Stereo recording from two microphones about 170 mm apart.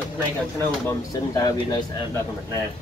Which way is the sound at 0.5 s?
15° left (ahead or behind).